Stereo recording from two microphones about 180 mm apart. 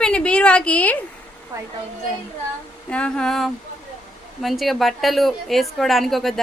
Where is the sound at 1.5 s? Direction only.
20° right (ahead or behind).